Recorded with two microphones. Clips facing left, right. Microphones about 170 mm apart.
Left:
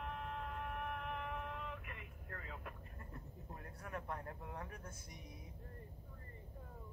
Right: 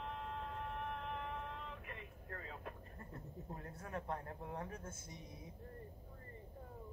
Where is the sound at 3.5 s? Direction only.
30° right (ahead or behind).